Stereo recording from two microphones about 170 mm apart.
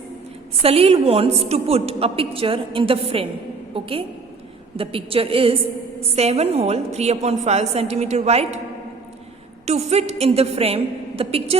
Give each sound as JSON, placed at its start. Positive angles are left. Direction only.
{"t": 0.6, "sound": "a woman's voice", "side_deg": -35}
{"t": 9.6, "sound": "a woman's voice", "side_deg": -40}